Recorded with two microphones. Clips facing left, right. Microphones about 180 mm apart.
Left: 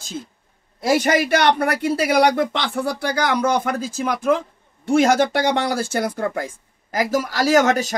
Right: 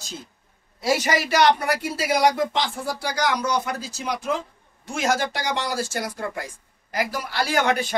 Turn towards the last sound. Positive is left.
turn(degrees=45)  # may be behind; listen again after turning